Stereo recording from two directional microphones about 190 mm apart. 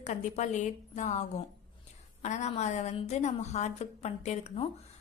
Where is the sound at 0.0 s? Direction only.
40° left (ahead or behind).